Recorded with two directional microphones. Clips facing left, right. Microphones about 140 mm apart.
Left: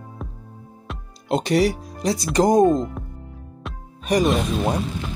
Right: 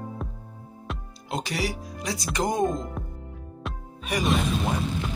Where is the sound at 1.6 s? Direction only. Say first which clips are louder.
Left 10 dB; 35° left (ahead or behind).